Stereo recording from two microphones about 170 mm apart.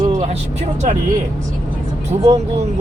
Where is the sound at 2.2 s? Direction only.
35° right (ahead or behind).